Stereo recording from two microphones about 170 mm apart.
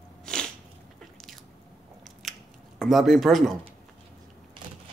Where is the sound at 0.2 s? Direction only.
5° left (ahead or behind).